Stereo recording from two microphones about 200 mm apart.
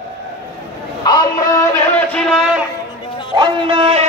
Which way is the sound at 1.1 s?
20° left (ahead or behind).